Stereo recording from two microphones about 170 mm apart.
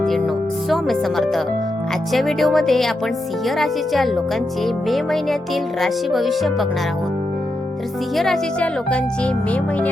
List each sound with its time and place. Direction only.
0.7 s speech: centre (ahead or behind)
8.1 s speech: centre (ahead or behind)